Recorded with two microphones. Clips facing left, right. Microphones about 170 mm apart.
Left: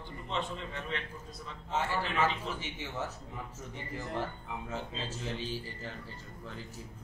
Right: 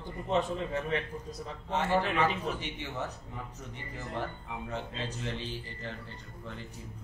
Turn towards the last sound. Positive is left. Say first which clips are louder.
# left 1 dB
turn(degrees=5)  # may be behind; listen again after turning